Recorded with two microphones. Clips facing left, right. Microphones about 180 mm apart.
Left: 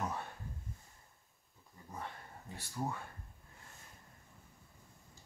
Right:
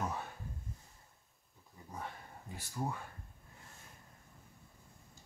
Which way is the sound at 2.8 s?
5° right (ahead or behind).